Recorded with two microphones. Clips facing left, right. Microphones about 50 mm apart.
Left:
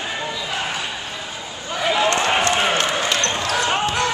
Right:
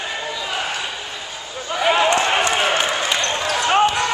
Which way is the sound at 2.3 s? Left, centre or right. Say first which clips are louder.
Even; centre.